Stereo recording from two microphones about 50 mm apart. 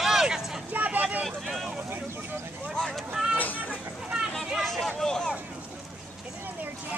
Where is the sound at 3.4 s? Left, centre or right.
Left.